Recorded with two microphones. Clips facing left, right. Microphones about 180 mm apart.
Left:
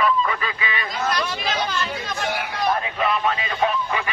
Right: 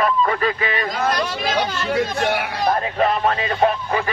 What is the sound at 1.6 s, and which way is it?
A man's voice, 65° right (ahead or behind).